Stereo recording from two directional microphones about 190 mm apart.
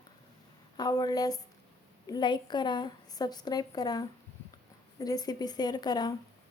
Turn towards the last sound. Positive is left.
turn(degrees=20)  # may be behind; listen again after turning